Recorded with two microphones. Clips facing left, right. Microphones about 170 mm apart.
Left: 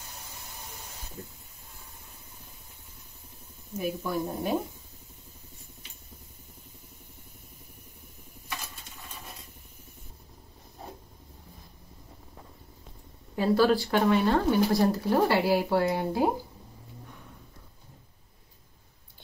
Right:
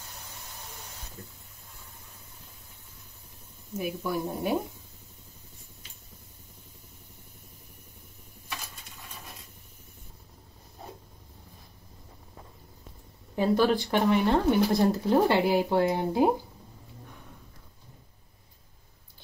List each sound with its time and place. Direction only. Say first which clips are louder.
3.7 s a woman's voice: even; 10° right (ahead or behind)
13.6 s speech: left 3 dB; 20° right (ahead or behind)